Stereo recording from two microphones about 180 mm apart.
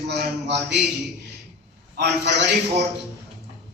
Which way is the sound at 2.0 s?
65° right (ahead or behind).